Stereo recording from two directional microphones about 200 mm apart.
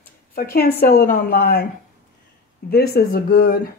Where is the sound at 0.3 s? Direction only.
50° left (ahead or behind).